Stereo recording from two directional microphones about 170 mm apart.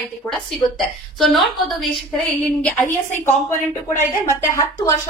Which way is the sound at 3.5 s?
15° left (ahead or behind).